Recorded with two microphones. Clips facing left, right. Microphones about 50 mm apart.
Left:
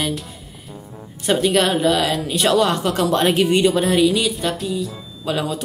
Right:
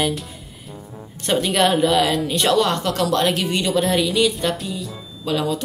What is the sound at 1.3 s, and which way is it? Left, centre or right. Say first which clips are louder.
Speech: left 1 dB; centre.